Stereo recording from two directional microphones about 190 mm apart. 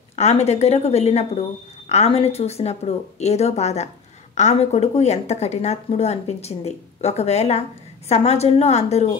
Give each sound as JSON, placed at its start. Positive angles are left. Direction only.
{"t": 0.1, "sound": "a woman's voice", "side_deg": 35}